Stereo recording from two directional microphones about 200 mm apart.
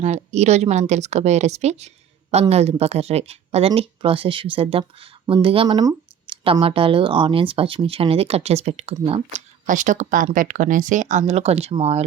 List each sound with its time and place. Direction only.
0.0 s a woman's voice: 35° right (ahead or behind)